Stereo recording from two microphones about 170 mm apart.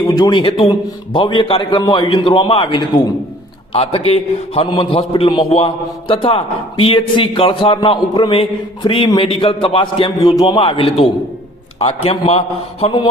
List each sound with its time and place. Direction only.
0.1 s a man's voice: 25° left (ahead or behind)